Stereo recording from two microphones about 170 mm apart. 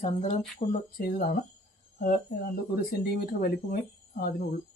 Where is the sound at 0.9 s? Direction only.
55° left (ahead or behind).